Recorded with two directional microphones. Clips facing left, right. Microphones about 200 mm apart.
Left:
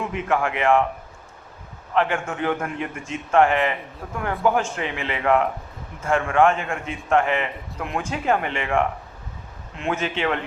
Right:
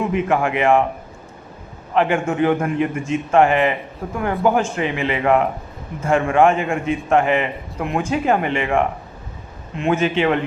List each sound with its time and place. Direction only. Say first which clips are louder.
0.0 s a man's voice: right 5 dB; 10° right (ahead or behind)
1.9 s a man's voice: right 5 dB; 15° right (ahead or behind)